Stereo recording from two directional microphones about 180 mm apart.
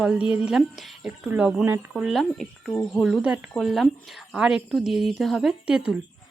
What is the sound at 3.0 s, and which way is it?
Speech, 5° right (ahead or behind).